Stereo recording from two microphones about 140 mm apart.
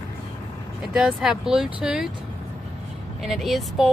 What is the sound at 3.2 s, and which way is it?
Speech, centre (ahead or behind).